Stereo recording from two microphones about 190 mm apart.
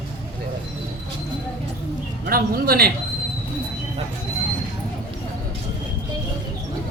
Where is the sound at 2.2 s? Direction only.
55° right (ahead or behind).